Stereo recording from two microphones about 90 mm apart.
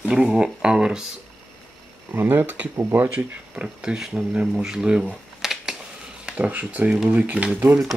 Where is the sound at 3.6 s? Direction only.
10° right (ahead or behind).